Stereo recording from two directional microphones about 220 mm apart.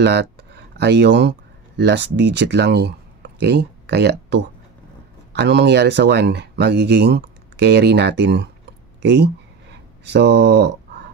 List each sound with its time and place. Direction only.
0.0 s speech: 50° right (ahead or behind)